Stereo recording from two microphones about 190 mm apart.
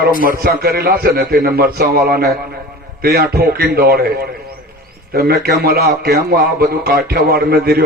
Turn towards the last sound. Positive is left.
turn(degrees=-55)  # may be behind; listen again after turning